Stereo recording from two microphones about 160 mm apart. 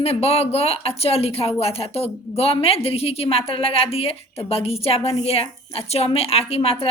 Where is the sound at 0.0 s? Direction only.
40° left (ahead or behind).